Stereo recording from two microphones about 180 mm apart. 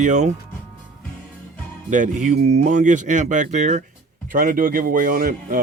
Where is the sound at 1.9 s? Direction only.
45° right (ahead or behind).